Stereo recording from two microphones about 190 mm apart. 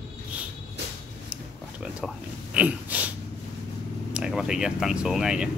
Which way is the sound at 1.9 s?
5° right (ahead or behind).